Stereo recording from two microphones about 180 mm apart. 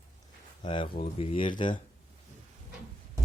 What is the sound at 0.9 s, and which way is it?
Speech, 40° left (ahead or behind).